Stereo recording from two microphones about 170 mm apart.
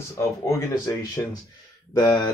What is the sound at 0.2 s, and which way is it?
Speech, 20° left (ahead or behind).